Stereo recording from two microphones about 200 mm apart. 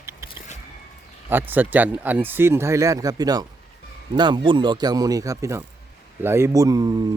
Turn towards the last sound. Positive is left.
turn(degrees=-20)  # may be behind; listen again after turning